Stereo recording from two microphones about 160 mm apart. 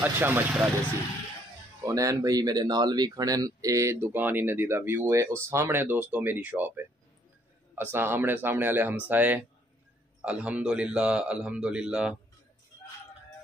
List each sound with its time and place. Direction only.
0.0 s a man's voice: 10° right (ahead or behind)
1.8 s a man's voice: 20° right (ahead or behind); by 12.2 s 5° right (ahead or behind)